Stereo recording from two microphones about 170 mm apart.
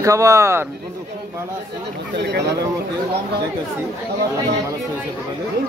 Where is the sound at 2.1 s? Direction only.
90° right.